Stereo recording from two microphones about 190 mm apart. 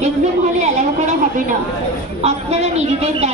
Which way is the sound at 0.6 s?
40° right (ahead or behind).